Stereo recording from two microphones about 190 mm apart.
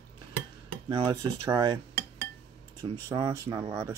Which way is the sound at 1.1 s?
20° right (ahead or behind).